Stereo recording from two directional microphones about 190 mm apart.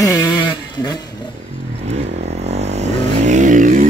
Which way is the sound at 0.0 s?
15° left (ahead or behind).